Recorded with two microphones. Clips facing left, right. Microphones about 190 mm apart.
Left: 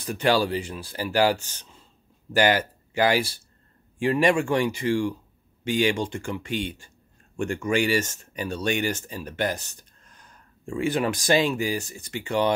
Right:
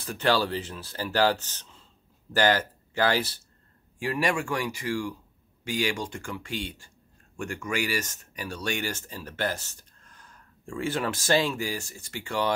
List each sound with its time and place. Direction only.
0.0 s speech: 15° left (ahead or behind)
4.0 s speech: 25° left (ahead or behind)